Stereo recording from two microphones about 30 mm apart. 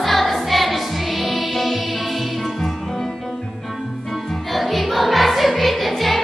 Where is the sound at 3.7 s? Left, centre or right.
Centre.